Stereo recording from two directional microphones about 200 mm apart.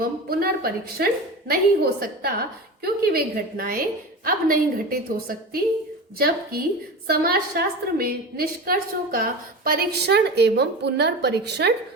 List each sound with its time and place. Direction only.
0.0 s a woman's voice: 45° right (ahead or behind)